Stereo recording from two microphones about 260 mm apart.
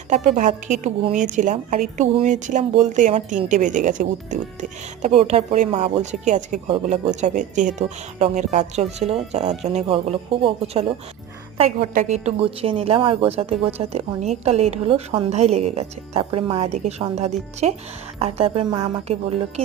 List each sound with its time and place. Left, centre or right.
0.1 s a woman's voice: right